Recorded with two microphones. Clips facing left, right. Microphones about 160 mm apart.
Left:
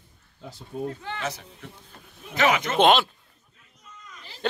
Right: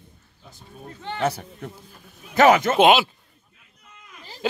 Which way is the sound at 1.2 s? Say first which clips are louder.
Right 8 dB; 60° right (ahead or behind).